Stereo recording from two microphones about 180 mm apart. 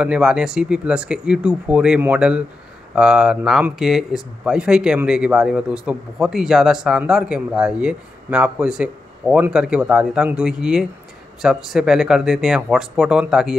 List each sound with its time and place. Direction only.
0.0 s speech: 5° right (ahead or behind)